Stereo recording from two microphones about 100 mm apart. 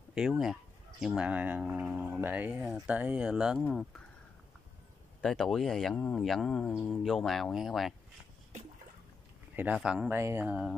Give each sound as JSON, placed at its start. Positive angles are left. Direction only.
{"t": 0.1, "sound": "speech", "side_deg": -5}
{"t": 5.2, "sound": "speech", "side_deg": 5}
{"t": 10.0, "sound": "speech", "side_deg": -25}
{"t": 10.4, "sound": "speech", "side_deg": -10}